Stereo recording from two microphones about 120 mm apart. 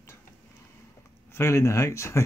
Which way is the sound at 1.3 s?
20° left (ahead or behind).